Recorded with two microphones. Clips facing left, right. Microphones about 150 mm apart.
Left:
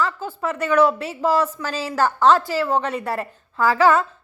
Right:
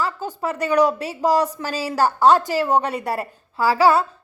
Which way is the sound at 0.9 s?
15° right (ahead or behind).